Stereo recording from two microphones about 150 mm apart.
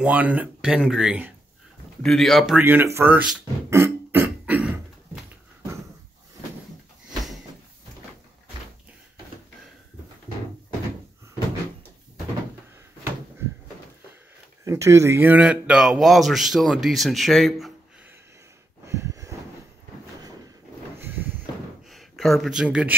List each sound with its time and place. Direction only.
0.0 s speech: 10° right (ahead or behind)
2.6 s speech: 15° right (ahead or behind)
3.7 s throat clearing: 15° right (ahead or behind)
14.6 s speech: 20° right (ahead or behind); by 17.7 s centre (ahead or behind)
18.9 s a sound: 20° right (ahead or behind)
21.0 s a sound: 15° right (ahead or behind)
21.8 s speech: centre (ahead or behind)